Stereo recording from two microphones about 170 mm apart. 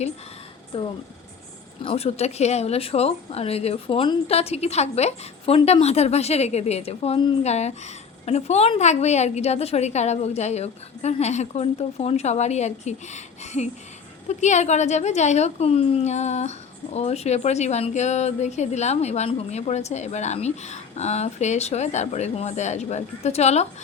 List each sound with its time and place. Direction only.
0.7 s a woman's voice: 35° left (ahead or behind)